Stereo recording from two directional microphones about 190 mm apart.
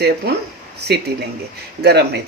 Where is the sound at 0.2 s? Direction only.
55° right (ahead or behind).